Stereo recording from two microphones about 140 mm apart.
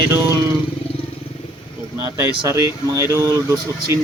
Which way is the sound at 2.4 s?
20° right (ahead or behind).